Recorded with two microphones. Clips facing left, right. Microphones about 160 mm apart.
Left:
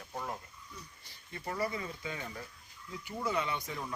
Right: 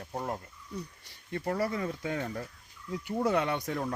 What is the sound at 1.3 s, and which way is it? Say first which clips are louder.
Speech: right 5 dB; 65° right (ahead or behind).